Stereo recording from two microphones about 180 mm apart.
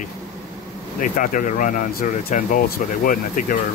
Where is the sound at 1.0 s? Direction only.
45° left (ahead or behind).